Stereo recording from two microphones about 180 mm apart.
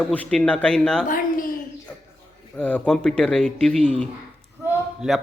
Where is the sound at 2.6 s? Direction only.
5° left (ahead or behind).